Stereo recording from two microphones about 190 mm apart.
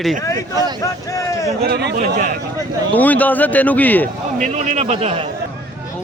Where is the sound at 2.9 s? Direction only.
10° left (ahead or behind).